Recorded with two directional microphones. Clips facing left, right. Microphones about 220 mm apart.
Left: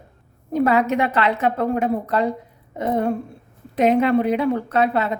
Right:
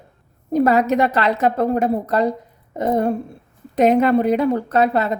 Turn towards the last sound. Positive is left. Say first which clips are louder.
# right 2 dB
turn(degrees=-40)  # may be behind; listen again after turning